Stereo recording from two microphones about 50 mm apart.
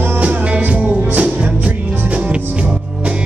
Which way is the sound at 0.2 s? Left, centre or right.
Right.